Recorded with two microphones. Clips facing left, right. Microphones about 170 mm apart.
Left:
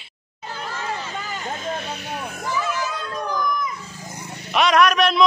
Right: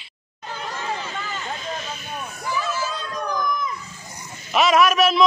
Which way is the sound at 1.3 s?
50° left (ahead or behind).